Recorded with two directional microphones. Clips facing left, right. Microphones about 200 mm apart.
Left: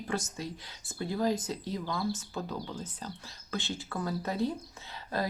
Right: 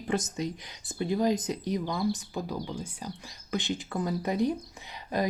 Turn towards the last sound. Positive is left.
turn(degrees=-15)  # may be behind; listen again after turning